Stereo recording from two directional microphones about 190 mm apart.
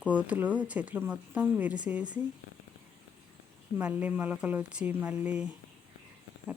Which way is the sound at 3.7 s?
10° right (ahead or behind).